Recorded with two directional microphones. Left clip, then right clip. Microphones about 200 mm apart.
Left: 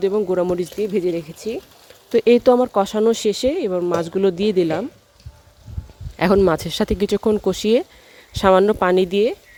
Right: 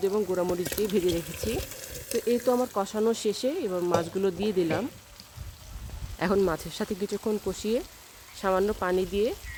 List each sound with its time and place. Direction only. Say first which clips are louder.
0.0 s speech: left 8 dB; 35° left (ahead or behind)
0.9 s speech: left 6 dB; 20° left (ahead or behind)
2.1 s speech: left 12 dB; 45° left (ahead or behind)
6.1 s speech: left 10 dB; 40° left (ahead or behind)